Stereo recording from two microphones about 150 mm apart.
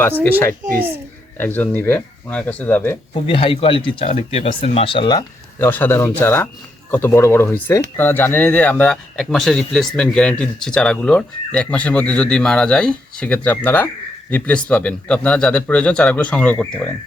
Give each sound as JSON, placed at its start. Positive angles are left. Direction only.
{"t": 0.2, "sound": "speech", "side_deg": 10}
{"t": 3.2, "sound": "speech", "side_deg": 35}
{"t": 5.5, "sound": "speech", "side_deg": 10}